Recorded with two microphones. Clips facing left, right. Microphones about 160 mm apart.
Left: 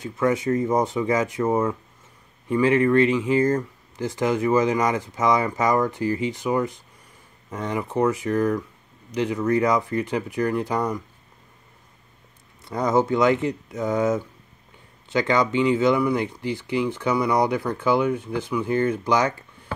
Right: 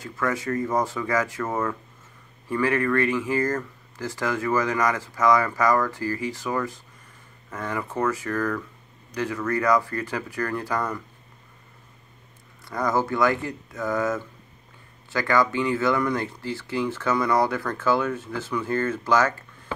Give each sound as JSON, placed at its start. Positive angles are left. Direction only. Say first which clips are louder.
{"t": 0.0, "sound": "speech", "louder": "left 5 dB", "side_deg": 20}
{"t": 12.6, "sound": "speech", "louder": "left 4 dB", "side_deg": 20}